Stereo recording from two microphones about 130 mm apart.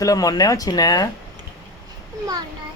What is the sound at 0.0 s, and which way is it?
Speech, 25° left (ahead or behind).